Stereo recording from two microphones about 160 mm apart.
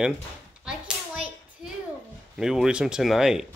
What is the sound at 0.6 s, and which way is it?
Hands, 5° right (ahead or behind).